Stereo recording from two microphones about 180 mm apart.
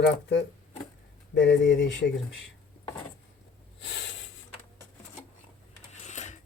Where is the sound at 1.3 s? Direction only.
80° left.